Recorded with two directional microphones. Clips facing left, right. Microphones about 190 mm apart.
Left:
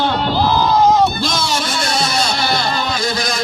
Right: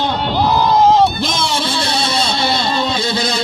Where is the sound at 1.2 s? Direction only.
30° right (ahead or behind).